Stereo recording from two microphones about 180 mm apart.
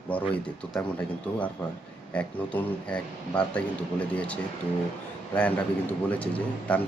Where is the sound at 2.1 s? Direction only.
10° left (ahead or behind).